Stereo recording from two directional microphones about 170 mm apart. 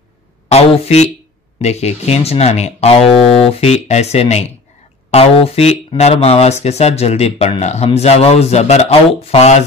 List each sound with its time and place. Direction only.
0.5 s speech: 40° left (ahead or behind)